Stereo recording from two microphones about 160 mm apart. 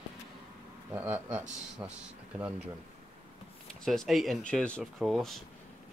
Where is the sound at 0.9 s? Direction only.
10° right (ahead or behind).